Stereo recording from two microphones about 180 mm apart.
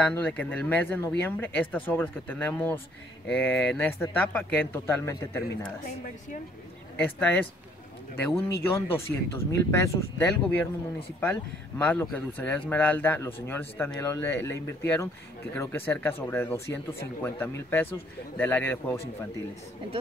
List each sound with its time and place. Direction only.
0.0 s speech: 5° left (ahead or behind)
7.0 s speech: 10° left (ahead or behind)
11.8 s speech: 10° left (ahead or behind)